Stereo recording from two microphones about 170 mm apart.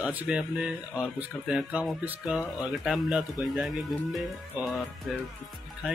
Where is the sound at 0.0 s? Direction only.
10° right (ahead or behind).